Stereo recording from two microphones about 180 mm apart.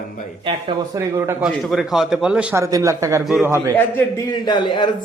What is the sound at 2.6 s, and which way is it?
Speech, 20° right (ahead or behind).